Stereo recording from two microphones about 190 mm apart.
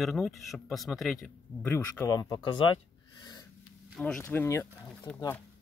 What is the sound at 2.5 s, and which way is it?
Gasp, 25° left (ahead or behind).